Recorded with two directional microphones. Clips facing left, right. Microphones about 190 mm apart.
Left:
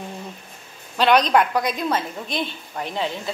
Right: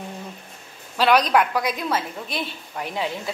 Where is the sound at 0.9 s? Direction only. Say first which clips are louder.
Left 1 dB; 5° right (ahead or behind).